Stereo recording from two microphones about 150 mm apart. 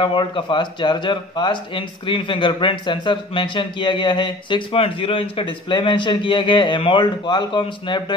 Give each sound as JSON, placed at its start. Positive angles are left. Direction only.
{"t": 0.0, "sound": "speech", "side_deg": 30}